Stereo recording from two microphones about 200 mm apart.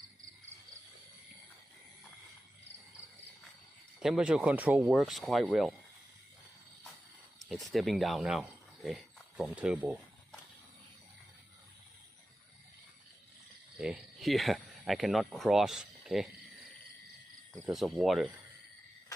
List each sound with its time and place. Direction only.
4.0 s speech: 5° right (ahead or behind)
7.4 s speech: centre (ahead or behind)
13.7 s speech: 5° right (ahead or behind)
17.5 s speech: centre (ahead or behind)